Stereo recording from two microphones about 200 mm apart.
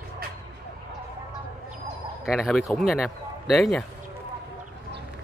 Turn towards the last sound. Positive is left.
turn(degrees=0)  # may be behind; listen again after turning